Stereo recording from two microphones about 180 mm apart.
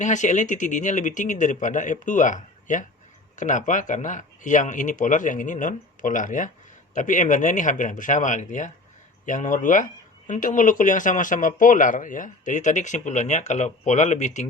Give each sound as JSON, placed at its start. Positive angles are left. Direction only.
{"t": 0.0, "sound": "speech", "side_deg": 45}